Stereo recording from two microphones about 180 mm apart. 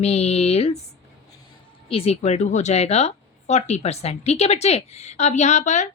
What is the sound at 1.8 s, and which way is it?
Speech, 35° left (ahead or behind).